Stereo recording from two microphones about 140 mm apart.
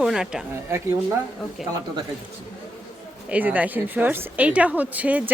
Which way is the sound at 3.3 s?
10° right (ahead or behind).